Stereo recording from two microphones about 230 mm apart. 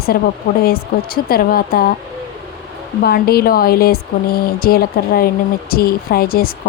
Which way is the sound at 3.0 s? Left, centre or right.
Left.